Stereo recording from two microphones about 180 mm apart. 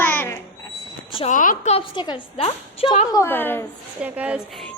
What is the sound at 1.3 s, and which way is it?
Speech, 45° left (ahead or behind).